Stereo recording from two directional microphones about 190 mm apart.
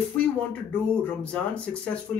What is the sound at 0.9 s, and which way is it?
Speech, 5° left (ahead or behind).